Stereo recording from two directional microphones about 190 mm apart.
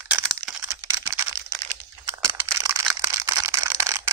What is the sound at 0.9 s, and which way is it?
Computer keyboard, 15° right (ahead or behind).